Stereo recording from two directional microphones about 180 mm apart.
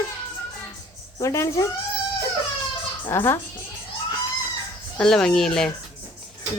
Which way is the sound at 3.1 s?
15° left (ahead or behind).